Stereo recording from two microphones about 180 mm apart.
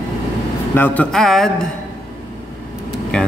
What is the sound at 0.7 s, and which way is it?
A man's voice, 10° left (ahead or behind).